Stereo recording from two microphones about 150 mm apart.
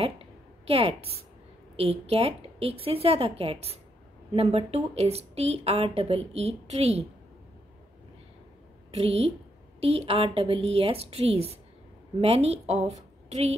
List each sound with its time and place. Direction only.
0.0 s a sound: 40° right (ahead or behind)
1.8 s a woman's voice: 40° right (ahead or behind)
8.9 s a woman's voice: 40° right (ahead or behind)